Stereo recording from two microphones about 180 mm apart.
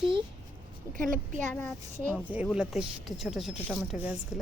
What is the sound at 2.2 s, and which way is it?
Speech, 5° right (ahead or behind).